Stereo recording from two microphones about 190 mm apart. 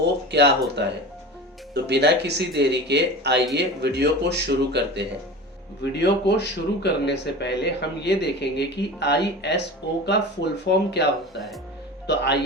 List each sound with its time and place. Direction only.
0.3 s speech: 60° right (ahead or behind)
5.8 s speech: 65° left (ahead or behind)
12.0 s speech: 65° left (ahead or behind)